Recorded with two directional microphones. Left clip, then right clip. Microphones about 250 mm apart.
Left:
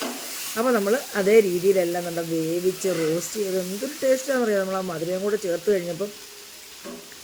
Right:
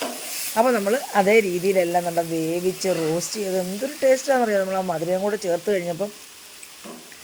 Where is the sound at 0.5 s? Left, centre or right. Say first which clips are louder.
Right 2 dB; centre.